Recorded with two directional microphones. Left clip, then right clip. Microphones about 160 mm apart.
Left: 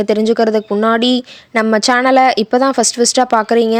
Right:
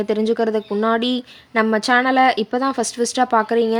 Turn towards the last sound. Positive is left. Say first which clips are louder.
# left 5 dB
turn(degrees=45)  # may be behind; listen again after turning